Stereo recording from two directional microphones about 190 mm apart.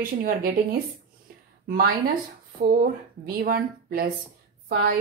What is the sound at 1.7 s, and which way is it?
Speech, 50° right (ahead or behind).